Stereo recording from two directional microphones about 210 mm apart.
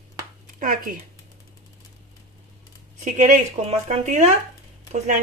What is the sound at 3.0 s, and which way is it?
A woman's voice, 35° right (ahead or behind).